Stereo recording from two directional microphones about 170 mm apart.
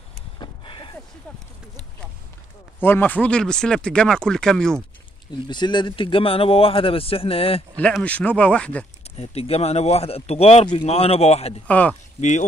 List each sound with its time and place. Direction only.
0.4 s a sound: 25° left (ahead or behind)
2.8 s speech: 10° left (ahead or behind)
5.5 s speech: 25° left (ahead or behind)
7.7 s speech: 5° left (ahead or behind)
9.1 s speech: 35° left (ahead or behind)
11.6 s speech: 10° left (ahead or behind)
12.2 s speech: 45° left (ahead or behind)